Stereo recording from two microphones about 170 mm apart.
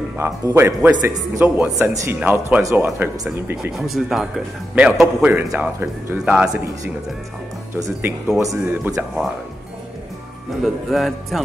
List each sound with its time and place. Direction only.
0.2 s a man's voice: 15° right (ahead or behind)
5.0 s speech: 15° right (ahead or behind)
7.7 s speech: 10° right (ahead or behind)
10.6 s speech: centre (ahead or behind)